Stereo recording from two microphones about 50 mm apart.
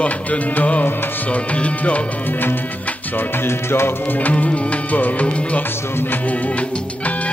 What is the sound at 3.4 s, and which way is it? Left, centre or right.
Music, left.